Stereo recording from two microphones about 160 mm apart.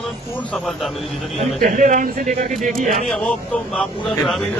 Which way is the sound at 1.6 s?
55° right (ahead or behind).